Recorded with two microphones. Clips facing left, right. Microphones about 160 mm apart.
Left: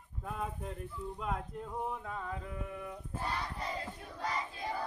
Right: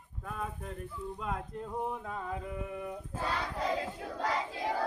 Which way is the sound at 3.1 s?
90° right.